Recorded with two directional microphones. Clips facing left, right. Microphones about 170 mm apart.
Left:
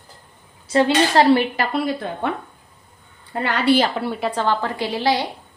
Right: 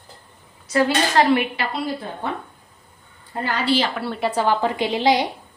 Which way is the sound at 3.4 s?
65° left (ahead or behind).